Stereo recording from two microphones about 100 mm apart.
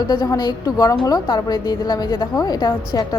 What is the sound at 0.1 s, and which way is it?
Speech, 45° left (ahead or behind).